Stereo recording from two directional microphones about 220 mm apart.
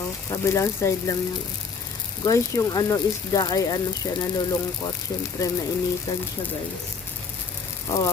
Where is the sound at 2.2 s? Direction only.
15° left (ahead or behind).